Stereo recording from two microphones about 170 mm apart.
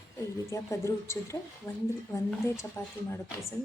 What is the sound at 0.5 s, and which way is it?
A woman's voice, 15° left (ahead or behind).